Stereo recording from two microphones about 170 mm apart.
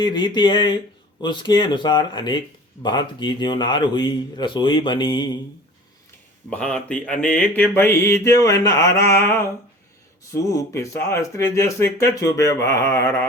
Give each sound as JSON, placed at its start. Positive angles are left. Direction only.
{"t": 0.0, "sound": "speech", "side_deg": 25}
{"t": 6.5, "sound": "mantra", "side_deg": 5}